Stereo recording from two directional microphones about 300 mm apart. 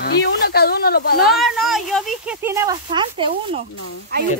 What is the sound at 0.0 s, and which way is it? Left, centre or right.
Speech, left.